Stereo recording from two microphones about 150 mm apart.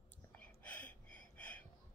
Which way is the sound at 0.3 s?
10° left (ahead or behind).